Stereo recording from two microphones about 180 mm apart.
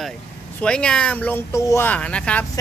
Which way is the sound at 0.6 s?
5° left (ahead or behind).